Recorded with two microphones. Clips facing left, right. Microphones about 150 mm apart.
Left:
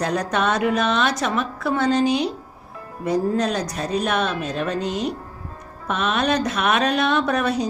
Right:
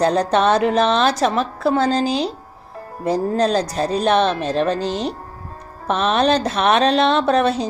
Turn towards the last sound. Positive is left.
turn(degrees=-25)  # may be behind; listen again after turning